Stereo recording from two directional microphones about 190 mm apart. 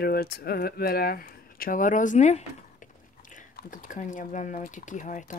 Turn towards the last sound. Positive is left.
turn(degrees=40)  # may be behind; listen again after turning